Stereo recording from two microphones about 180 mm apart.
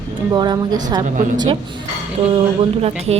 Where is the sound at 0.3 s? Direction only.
20° right (ahead or behind).